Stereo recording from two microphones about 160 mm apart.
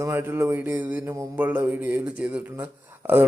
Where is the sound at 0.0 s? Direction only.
15° right (ahead or behind).